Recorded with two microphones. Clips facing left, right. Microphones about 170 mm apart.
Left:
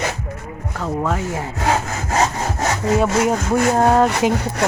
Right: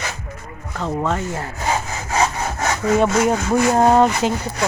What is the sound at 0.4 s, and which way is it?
Speech, 5° left (ahead or behind).